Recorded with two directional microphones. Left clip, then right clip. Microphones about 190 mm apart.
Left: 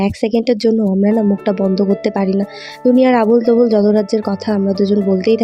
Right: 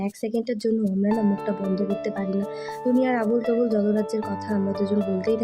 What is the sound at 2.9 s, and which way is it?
Speech, 40° left (ahead or behind).